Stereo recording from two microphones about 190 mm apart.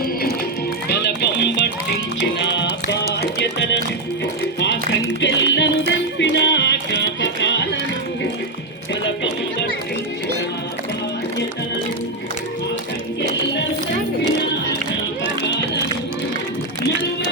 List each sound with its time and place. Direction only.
0.9 s music: 60° left (ahead or behind)
9.0 s music: 70° left (ahead or behind)
15.2 s run: 70° left (ahead or behind)